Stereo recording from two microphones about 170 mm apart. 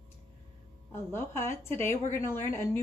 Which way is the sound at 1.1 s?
15° left (ahead or behind).